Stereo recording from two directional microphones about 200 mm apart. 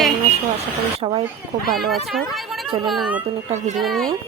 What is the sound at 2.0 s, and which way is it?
Speech, centre (ahead or behind).